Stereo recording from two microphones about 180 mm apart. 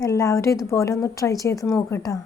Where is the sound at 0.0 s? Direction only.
20° left (ahead or behind).